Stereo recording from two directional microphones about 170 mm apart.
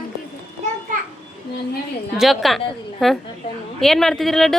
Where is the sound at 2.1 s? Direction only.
Centre (ahead or behind).